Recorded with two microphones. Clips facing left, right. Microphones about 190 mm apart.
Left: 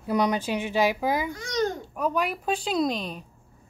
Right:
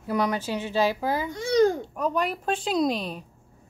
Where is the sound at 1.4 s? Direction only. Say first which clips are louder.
Right 7 dB; 30° right (ahead or behind).